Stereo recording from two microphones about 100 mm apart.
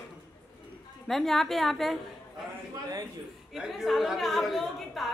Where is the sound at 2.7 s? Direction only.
40° right (ahead or behind).